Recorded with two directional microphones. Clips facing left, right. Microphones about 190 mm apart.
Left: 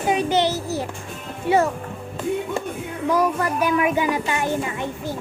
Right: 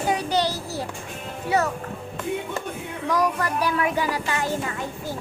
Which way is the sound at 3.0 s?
20° left (ahead or behind).